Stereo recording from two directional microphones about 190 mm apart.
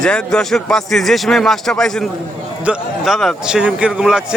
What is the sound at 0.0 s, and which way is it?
A man's voice, 5° left (ahead or behind).